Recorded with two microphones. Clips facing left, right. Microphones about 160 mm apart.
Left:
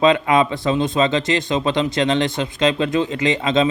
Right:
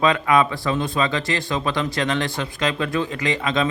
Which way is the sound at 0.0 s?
25° left (ahead or behind).